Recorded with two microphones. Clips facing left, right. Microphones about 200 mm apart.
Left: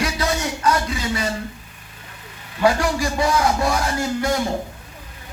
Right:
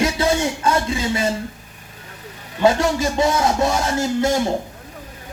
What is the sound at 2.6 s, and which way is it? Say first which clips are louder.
A man's voice: right 2 dB; 25° right (ahead or behind).